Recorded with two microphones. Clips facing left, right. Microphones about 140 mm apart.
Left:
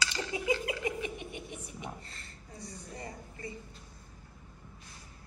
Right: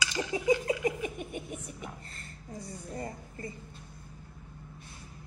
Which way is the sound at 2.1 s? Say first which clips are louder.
Right 5 dB; 50° right (ahead or behind).